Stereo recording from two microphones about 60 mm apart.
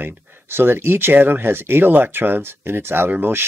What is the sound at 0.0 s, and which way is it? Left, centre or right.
Speech, right.